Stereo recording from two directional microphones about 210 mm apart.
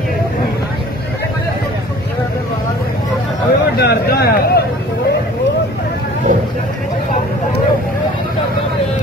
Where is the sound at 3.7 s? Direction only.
50° left (ahead or behind).